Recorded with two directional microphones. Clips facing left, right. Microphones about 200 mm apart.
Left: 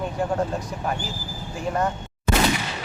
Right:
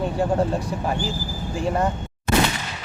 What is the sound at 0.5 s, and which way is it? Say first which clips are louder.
Speech: right 3 dB; 30° right (ahead or behind).